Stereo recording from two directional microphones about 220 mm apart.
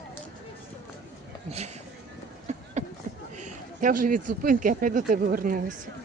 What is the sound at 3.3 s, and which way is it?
Speech, 35° right (ahead or behind).